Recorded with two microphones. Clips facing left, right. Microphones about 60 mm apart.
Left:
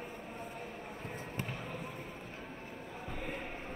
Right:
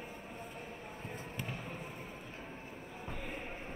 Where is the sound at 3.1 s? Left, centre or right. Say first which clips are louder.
Left 2 dB; left.